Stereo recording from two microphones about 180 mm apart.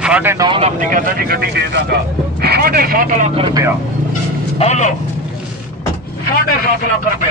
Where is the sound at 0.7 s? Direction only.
50° right (ahead or behind); by 3.5 s 35° right (ahead or behind).